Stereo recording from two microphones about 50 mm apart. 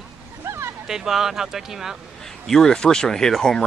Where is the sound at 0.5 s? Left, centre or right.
Right.